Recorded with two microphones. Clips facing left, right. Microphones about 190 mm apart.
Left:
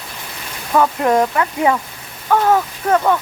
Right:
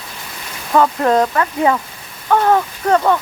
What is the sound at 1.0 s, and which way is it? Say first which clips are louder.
Speech: right 1 dB; 15° left (ahead or behind).